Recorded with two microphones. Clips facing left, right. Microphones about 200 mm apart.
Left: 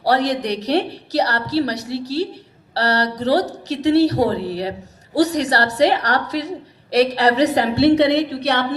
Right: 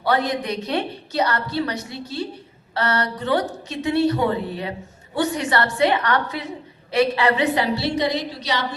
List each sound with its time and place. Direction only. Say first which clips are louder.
0.2 s speech: left 4 dB; 75° left (ahead or behind)
0.7 s a woman's voice: left 6 dB; 35° left (ahead or behind)
1.8 s a woman's voice: left 7 dB; 80° left
2.7 s a woman's voice: left 3 dB; 35° left (ahead or behind)
4.4 s speech: left 4 dB; 90° left
5.1 s a woman's voice: left 4 dB; 40° left (ahead or behind)
6.1 s a woman's voice: left 3 dB; 80° left
6.9 s a woman's voice: left 3 dB; 40° left (ahead or behind); by 8.6 s 60° left (ahead or behind)